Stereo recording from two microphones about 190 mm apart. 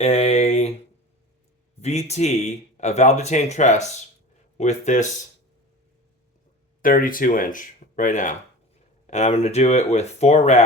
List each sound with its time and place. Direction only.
0.0 s a sound: 35° left (ahead or behind)
1.8 s speech: 35° left (ahead or behind)
6.8 s speech: 45° left (ahead or behind)